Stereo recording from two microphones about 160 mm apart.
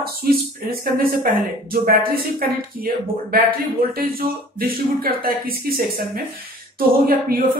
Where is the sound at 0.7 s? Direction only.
60° right (ahead or behind).